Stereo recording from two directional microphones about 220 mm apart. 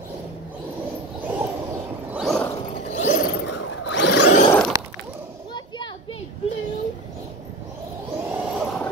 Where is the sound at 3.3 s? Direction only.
55° left (ahead or behind); by 4.0 s 75° left (ahead or behind).